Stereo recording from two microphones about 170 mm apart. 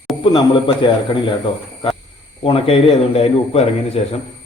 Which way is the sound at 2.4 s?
35° left (ahead or behind).